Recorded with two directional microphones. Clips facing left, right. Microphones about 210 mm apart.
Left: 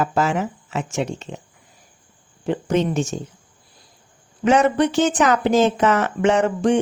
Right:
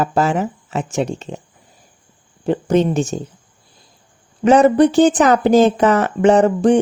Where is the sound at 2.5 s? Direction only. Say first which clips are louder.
Right 5 dB; 35° right (ahead or behind).